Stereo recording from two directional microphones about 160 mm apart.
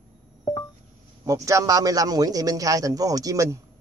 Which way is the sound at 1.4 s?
20° right (ahead or behind).